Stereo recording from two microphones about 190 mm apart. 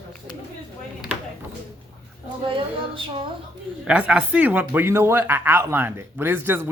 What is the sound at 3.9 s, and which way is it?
Speech, 5° right (ahead or behind).